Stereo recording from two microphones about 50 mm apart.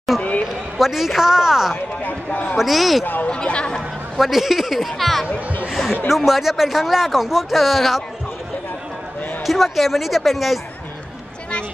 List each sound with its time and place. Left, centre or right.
0.7 s a woman's voice: centre
2.0 s speech: left
2.5 s speech: centre
3.3 s speech: centre
4.2 s speech: centre
9.5 s speech: centre